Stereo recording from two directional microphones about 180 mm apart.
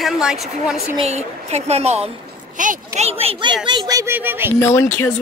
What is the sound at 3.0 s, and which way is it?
Speech, 35° right (ahead or behind).